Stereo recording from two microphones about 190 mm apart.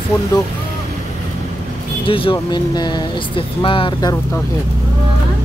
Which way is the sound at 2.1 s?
25° left (ahead or behind).